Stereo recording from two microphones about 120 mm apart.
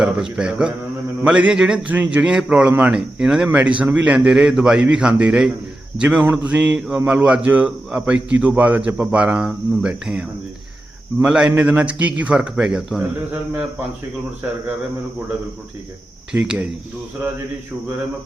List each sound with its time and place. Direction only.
0.0 s mantra: 5° right (ahead or behind)
1.2 s a man's voice: 10° right (ahead or behind)
16.3 s a man's voice: 10° right (ahead or behind)